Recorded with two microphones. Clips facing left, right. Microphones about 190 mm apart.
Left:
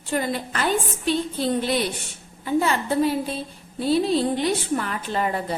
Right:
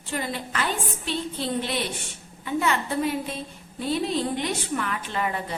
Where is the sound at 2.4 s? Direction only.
35° left (ahead or behind).